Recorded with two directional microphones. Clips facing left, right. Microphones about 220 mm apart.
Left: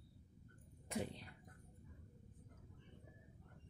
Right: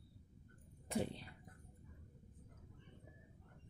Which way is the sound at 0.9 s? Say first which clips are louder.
Right 4 dB; 30° right (ahead or behind).